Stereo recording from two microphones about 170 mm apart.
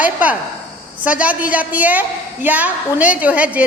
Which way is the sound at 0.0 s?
10° right (ahead or behind).